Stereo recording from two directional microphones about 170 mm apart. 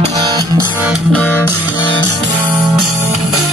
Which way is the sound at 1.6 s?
25° left (ahead or behind).